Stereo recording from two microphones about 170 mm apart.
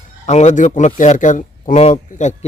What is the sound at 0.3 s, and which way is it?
Speech, 40° left (ahead or behind).